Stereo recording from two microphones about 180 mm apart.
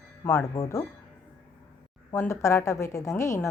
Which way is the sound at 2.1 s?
15° left (ahead or behind).